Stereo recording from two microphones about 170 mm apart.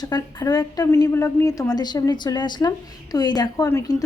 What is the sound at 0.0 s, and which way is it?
A woman's voice, 25° left (ahead or behind).